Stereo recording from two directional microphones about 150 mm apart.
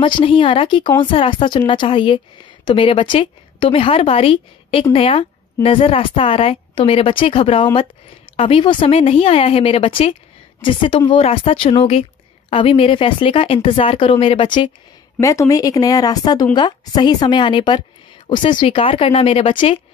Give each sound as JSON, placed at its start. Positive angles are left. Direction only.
{"t": 0.0, "sound": "a woman's voice", "side_deg": 35}
{"t": 15.1, "sound": "a woman's voice", "side_deg": 20}